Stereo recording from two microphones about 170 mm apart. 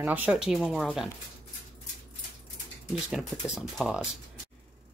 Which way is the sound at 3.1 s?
Centre (ahead or behind).